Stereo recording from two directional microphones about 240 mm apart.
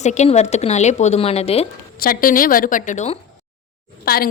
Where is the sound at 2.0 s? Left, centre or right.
Left.